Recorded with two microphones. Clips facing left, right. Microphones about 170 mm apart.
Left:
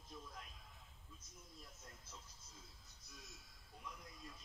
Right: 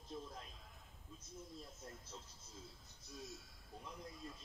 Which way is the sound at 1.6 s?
30° right (ahead or behind).